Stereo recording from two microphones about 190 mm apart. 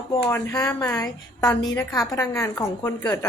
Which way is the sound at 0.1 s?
15° left (ahead or behind).